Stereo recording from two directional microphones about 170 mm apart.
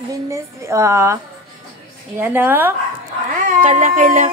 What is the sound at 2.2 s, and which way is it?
Speech, 10° right (ahead or behind).